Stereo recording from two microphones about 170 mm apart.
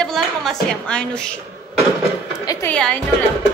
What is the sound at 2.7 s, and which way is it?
Speech, 5° left (ahead or behind).